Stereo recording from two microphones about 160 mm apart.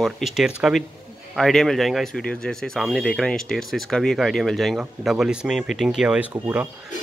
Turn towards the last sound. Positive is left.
turn(degrees=-10)  # may be behind; listen again after turning